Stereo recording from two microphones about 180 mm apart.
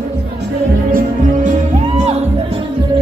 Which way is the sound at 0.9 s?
45° right (ahead or behind).